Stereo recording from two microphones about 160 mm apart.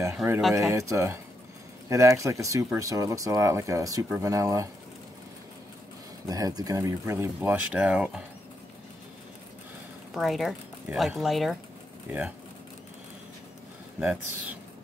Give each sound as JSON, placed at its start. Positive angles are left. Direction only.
{"t": 0.6, "sound": "speech", "side_deg": -20}
{"t": 6.2, "sound": "speech", "side_deg": -20}
{"t": 10.1, "sound": "speech", "side_deg": 0}
{"t": 12.1, "sound": "speech", "side_deg": -10}
{"t": 13.9, "sound": "speech", "side_deg": -10}